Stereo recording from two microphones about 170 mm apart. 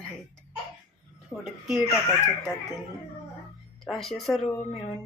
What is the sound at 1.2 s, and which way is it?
Speech, centre (ahead or behind).